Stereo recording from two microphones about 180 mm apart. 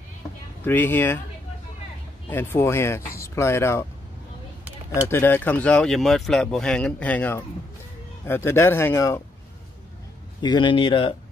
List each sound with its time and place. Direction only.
0.7 s speech: 10° left (ahead or behind)
2.2 s speech: 10° left (ahead or behind)
5.0 s speech: 10° left (ahead or behind)
10.4 s speech: 25° left (ahead or behind)